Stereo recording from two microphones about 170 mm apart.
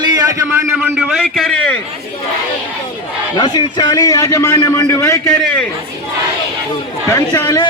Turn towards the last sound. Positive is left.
turn(degrees=25)  # may be behind; listen again after turning